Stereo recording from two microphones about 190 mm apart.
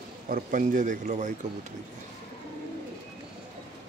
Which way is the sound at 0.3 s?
45° right (ahead or behind).